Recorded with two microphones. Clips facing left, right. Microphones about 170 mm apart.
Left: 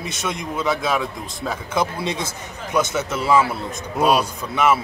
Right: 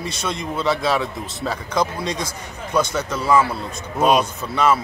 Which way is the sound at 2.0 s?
25° left (ahead or behind).